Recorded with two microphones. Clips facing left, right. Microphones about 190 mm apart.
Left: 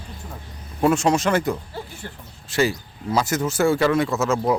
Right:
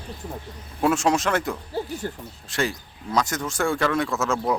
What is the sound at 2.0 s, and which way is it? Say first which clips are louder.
Speech: right 6 dB; 40° right (ahead or behind).